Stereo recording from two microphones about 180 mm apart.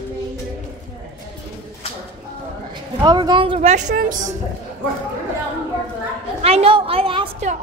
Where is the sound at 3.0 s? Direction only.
25° right (ahead or behind); by 4.3 s 45° right (ahead or behind).